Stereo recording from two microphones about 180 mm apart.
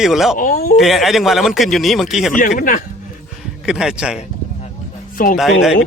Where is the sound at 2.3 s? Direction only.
45° left (ahead or behind).